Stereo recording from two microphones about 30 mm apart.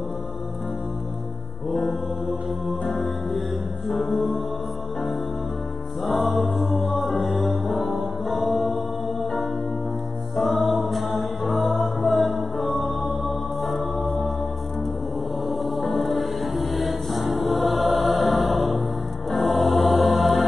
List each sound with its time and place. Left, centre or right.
1.7 s mantra: centre
2.8 s music: centre
6.0 s music: centre
10.3 s music: centre
15.4 s music: centre